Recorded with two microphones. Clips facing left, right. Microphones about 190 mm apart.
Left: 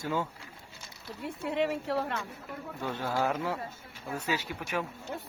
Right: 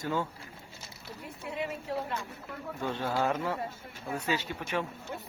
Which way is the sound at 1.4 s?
75° left (ahead or behind).